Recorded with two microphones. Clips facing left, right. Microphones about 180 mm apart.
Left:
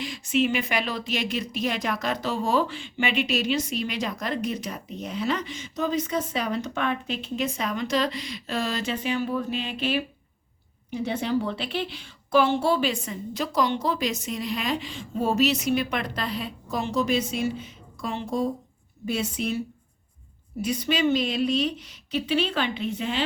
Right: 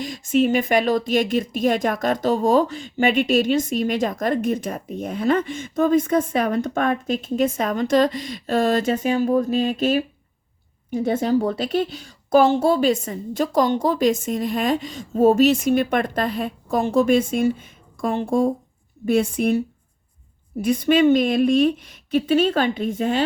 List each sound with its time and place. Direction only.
0.0 s a woman's voice: 45° right (ahead or behind)